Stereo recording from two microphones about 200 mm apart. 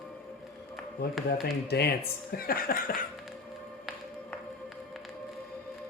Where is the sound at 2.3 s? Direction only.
50° left (ahead or behind).